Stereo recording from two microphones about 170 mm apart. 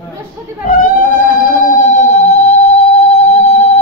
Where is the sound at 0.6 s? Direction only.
55° left (ahead or behind).